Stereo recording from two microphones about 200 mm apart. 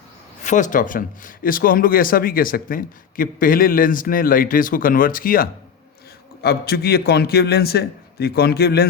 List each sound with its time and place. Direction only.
0.4 s speech: 40° left (ahead or behind)